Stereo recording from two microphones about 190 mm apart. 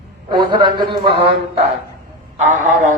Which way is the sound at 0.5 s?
25° right (ahead or behind).